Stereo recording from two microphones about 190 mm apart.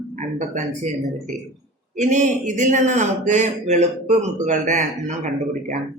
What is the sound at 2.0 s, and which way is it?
A man's voice, 40° right (ahead or behind).